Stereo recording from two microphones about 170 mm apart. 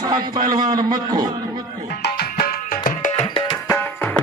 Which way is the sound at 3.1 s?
30° left (ahead or behind).